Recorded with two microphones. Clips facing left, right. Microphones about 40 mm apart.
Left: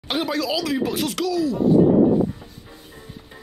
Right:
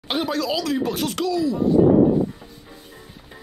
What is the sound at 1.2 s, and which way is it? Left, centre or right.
Speech, centre.